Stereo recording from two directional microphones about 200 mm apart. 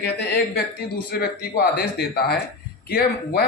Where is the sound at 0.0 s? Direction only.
55° left (ahead or behind).